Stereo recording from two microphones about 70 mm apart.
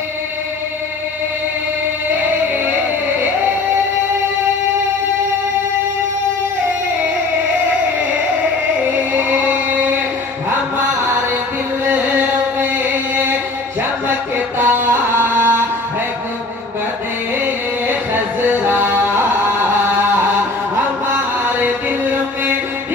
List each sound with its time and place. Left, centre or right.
9.5 s a sound: right
11.8 s chant: right
14.6 s music: right
18.5 s music: right
21.5 s music: right